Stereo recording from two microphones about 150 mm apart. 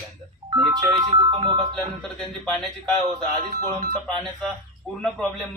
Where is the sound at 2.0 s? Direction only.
5° left (ahead or behind).